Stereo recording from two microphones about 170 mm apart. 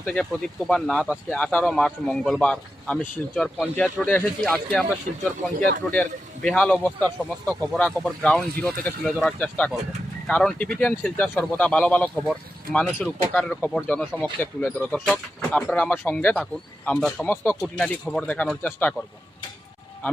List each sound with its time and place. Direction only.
0.0 s a man's voice: 10° left (ahead or behind)
5.1 s speech: 65° right (ahead or behind)
5.9 s a man's voice: 5° left (ahead or behind)
17.2 s a man's voice: 15° left (ahead or behind)